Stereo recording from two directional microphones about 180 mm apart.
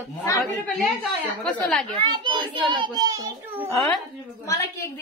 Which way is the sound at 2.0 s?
25° right (ahead or behind).